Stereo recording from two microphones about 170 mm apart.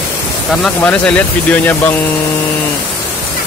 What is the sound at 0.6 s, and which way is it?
Speech, 5° left (ahead or behind).